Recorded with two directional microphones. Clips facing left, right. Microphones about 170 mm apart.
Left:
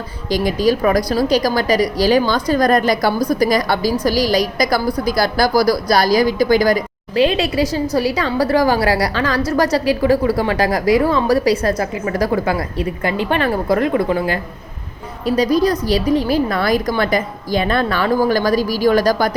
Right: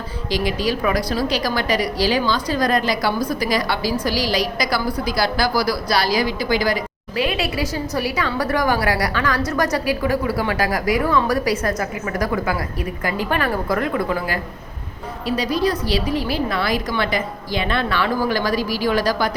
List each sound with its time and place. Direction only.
0.3 s a woman's voice: 45° left (ahead or behind)
7.2 s a woman's voice: 30° left (ahead or behind)
15.4 s a woman's voice: 40° left (ahead or behind)